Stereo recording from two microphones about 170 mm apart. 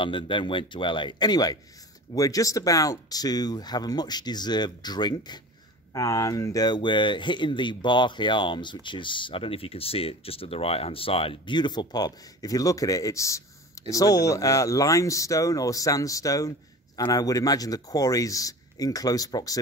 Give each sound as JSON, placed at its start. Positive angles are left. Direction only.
{"t": 0.0, "sound": "speech", "side_deg": 30}